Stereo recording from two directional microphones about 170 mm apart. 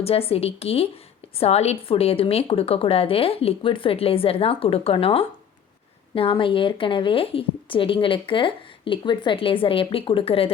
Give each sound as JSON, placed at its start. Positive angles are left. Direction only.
{"t": 0.0, "sound": "a woman's voice", "side_deg": 35}